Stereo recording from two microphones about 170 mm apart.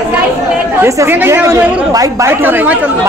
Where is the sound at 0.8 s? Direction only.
15° right (ahead or behind).